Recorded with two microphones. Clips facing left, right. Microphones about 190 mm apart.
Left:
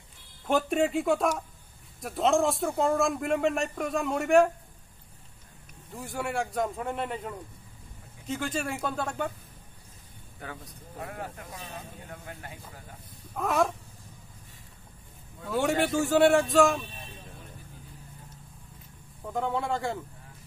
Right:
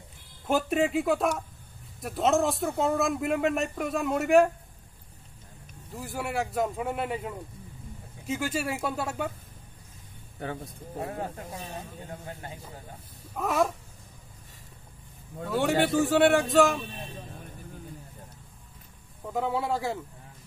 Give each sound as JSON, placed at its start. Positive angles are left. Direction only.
{"t": 0.5, "sound": "speech", "side_deg": -5}
{"t": 5.9, "sound": "speech", "side_deg": 0}
{"t": 10.4, "sound": "speech", "side_deg": -30}
{"t": 13.4, "sound": "speech", "side_deg": 0}
{"t": 15.4, "sound": "speech", "side_deg": 0}
{"t": 19.2, "sound": "speech", "side_deg": -5}